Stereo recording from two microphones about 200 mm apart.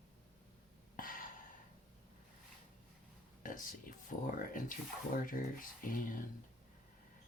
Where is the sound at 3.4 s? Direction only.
40° left (ahead or behind).